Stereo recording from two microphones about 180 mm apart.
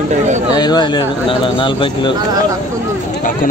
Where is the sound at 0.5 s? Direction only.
25° left (ahead or behind).